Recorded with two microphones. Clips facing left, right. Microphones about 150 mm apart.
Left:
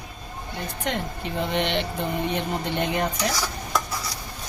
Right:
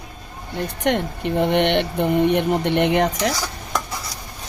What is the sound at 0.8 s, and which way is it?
Speech, 65° right (ahead or behind).